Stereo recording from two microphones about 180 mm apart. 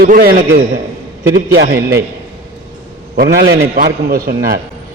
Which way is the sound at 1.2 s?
80° right.